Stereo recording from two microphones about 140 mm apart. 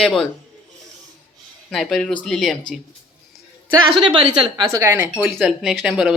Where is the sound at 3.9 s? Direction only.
40° right (ahead or behind).